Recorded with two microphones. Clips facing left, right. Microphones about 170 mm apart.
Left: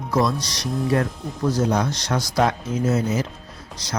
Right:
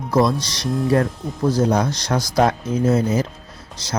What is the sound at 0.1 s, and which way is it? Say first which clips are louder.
Speech: right 4 dB; 30° right (ahead or behind).